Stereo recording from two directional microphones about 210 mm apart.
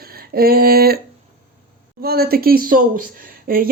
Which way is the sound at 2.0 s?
45° right (ahead or behind).